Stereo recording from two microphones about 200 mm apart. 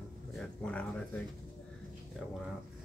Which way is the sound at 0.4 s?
5° left (ahead or behind).